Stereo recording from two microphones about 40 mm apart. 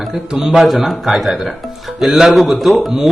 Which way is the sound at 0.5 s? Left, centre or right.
Centre.